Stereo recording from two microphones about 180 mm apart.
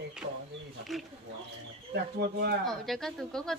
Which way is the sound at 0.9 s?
Centre (ahead or behind).